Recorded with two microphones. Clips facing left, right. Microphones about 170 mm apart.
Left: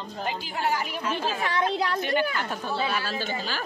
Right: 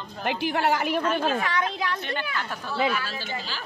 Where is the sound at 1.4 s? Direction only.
30° left (ahead or behind).